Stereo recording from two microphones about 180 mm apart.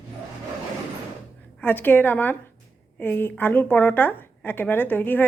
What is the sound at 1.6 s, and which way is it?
A woman's voice, 10° left (ahead or behind).